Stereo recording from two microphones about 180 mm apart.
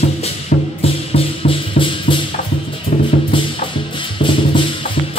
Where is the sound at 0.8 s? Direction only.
30° left (ahead or behind).